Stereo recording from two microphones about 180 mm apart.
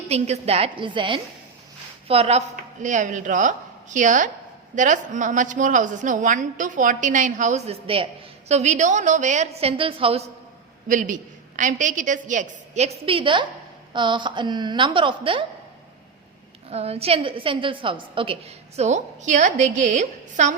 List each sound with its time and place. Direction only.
0.1 s a woman's voice: 35° right (ahead or behind)
10.8 s a man's voice: 45° right (ahead or behind); by 15.4 s 30° right (ahead or behind)
16.6 s a woman's voice: 35° right (ahead or behind)